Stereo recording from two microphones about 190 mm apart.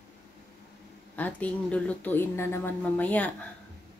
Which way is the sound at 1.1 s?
5° left (ahead or behind).